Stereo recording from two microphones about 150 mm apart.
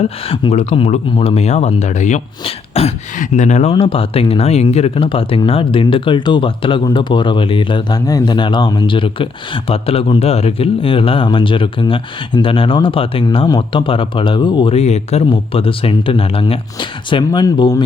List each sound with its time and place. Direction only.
0.0 s speech: 45° left (ahead or behind); by 17.8 s 25° left (ahead or behind)